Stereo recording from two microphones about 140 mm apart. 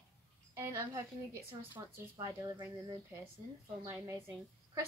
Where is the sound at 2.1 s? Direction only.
25° right (ahead or behind).